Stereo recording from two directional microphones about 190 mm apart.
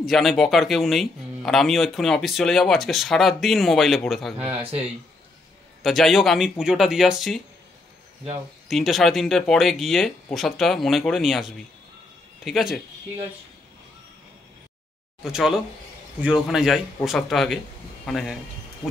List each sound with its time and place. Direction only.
0.0 s speech: centre (ahead or behind)
4.4 s speech: 30° right (ahead or behind)
5.8 s speech: centre (ahead or behind)
8.6 s speech: centre (ahead or behind)
15.2 s a man's voice: centre (ahead or behind)